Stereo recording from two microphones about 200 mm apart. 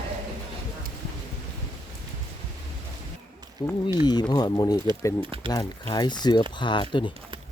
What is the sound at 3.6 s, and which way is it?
Speech, 20° left (ahead or behind).